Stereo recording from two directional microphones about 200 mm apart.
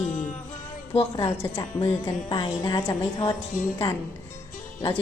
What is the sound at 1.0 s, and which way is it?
A woman's voice, 30° left (ahead or behind).